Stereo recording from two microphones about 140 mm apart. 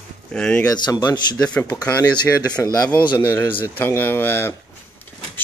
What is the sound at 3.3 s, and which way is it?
Speech, 15° left (ahead or behind).